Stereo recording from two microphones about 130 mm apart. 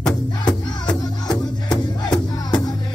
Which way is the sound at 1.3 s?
30° left (ahead or behind).